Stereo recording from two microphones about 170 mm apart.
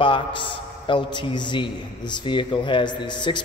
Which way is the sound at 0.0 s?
30° left (ahead or behind).